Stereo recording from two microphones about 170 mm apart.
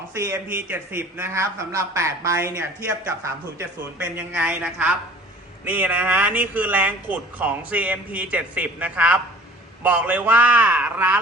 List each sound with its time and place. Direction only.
0.5 s speech: 10° right (ahead or behind)